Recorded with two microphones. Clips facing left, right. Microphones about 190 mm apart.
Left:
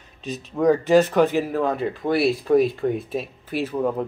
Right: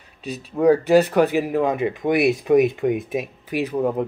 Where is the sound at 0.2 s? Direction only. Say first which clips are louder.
Right 2 dB; 10° right (ahead or behind).